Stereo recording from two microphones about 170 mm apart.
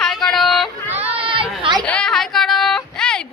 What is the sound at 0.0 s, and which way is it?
Yodeling, centre (ahead or behind).